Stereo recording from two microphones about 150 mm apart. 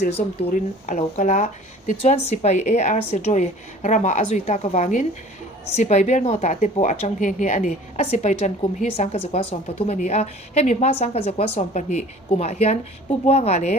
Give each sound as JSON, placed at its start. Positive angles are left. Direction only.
{"t": 0.5, "sound": "a woman's voice", "side_deg": 50}